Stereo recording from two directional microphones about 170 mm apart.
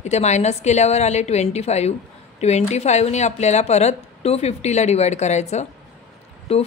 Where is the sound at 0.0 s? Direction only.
40° left (ahead or behind).